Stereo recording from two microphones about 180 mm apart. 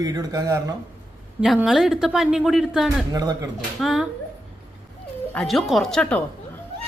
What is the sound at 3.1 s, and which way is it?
Speech, 20° right (ahead or behind).